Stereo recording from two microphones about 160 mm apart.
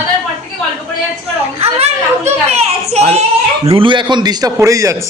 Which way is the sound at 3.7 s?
30° right (ahead or behind).